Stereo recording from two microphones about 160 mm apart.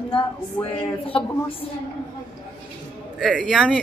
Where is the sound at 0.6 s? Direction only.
15° left (ahead or behind).